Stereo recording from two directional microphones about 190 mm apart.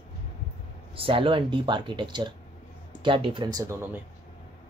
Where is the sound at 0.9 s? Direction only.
30° right (ahead or behind).